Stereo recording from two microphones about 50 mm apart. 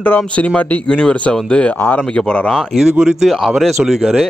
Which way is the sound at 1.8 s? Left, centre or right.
Left.